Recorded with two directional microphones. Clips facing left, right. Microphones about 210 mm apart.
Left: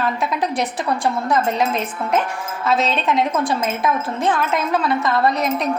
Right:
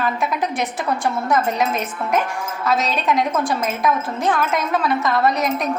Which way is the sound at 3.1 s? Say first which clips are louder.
Right 2 dB; centre (ahead or behind).